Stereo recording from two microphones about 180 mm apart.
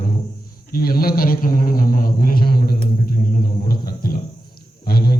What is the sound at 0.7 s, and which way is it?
A man's voice, 55° left (ahead or behind).